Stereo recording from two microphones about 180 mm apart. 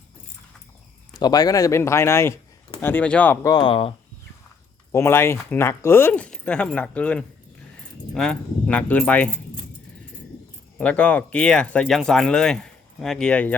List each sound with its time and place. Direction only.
1.1 s speech: 20° left (ahead or behind)
3.5 s speech: 30° left (ahead or behind)
4.9 s speech: 15° left (ahead or behind)
10.8 s speech: 5° left (ahead or behind)